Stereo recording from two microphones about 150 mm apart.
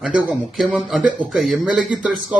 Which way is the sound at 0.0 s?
5° right (ahead or behind).